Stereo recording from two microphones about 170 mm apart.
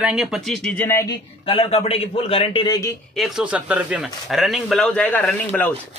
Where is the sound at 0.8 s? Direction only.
15° left (ahead or behind).